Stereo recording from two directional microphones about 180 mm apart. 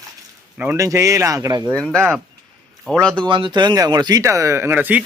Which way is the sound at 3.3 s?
25° right (ahead or behind).